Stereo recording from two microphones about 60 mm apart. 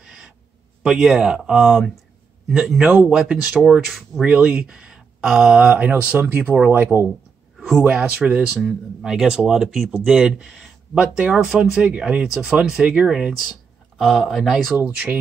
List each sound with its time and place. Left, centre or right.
0.0 s gasp: centre
0.8 s a man's voice: centre
3.8 s speech: centre
4.2 s speech: centre
6.4 s speech: right
7.5 s a sound: centre
7.8 s speech: centre
13.9 s speech: centre